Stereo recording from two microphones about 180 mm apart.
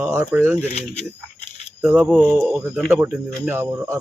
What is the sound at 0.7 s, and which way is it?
Speech, 35° left (ahead or behind).